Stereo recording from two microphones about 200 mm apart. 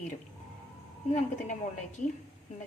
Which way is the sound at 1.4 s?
40° left (ahead or behind).